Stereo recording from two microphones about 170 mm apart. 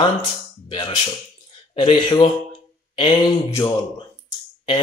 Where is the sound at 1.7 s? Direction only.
30° left (ahead or behind).